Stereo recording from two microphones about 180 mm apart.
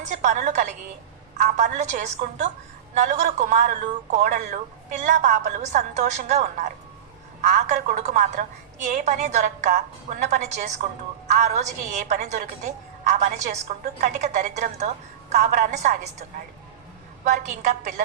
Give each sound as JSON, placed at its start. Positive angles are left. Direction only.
{"t": 0.0, "sound": "a woman's voice", "side_deg": -40}
{"t": 17.2, "sound": "a woman's voice", "side_deg": -40}